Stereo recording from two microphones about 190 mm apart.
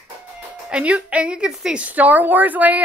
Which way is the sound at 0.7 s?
5° right (ahead or behind).